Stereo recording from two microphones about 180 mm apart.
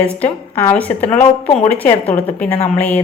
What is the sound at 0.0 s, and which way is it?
A woman's voice, 10° left (ahead or behind).